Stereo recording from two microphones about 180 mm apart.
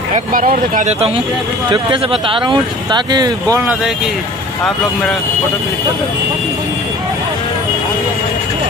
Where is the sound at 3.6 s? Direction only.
5° right (ahead or behind).